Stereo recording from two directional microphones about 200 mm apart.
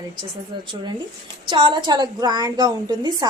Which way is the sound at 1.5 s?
25° right (ahead or behind).